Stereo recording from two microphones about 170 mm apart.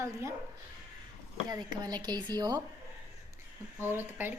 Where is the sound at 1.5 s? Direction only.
25° right (ahead or behind).